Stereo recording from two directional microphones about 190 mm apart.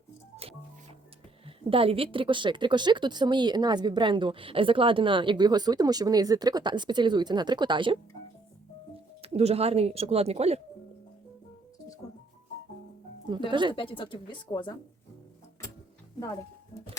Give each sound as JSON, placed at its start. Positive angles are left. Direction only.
{"t": 1.5, "sound": "speech", "side_deg": -30}
{"t": 9.2, "sound": "speech", "side_deg": -35}
{"t": 13.5, "sound": "speech", "side_deg": -25}
{"t": 13.7, "sound": "a woman's voice", "side_deg": 25}